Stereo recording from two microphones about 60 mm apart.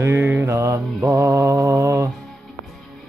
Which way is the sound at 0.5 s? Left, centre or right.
Right.